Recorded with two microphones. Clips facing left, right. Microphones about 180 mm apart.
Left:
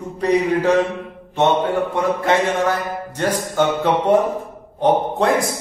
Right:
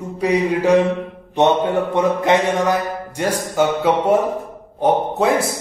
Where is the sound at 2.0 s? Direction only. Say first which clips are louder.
Right 3 dB; 15° right (ahead or behind).